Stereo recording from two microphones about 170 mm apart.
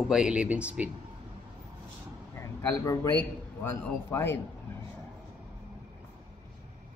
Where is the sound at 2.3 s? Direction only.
15° left (ahead or behind).